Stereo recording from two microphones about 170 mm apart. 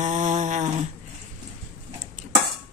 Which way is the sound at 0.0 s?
45° right (ahead or behind).